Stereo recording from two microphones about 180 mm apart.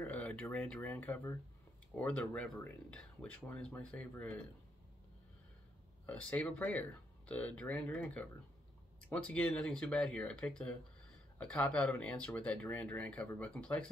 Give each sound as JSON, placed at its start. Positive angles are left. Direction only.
{"t": 0.0, "sound": "speech", "side_deg": 10}
{"t": 6.0, "sound": "speech", "side_deg": 5}